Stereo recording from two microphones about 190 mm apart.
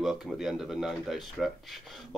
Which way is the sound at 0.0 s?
Centre (ahead or behind).